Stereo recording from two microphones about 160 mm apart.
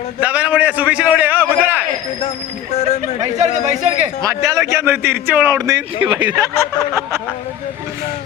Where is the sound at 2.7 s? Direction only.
45° left (ahead or behind).